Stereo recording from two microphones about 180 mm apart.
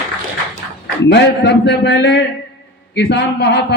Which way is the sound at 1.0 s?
75° left (ahead or behind).